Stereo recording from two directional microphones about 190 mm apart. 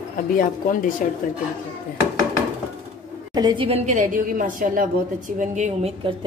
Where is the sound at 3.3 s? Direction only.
25° right (ahead or behind); by 5.9 s 40° right (ahead or behind).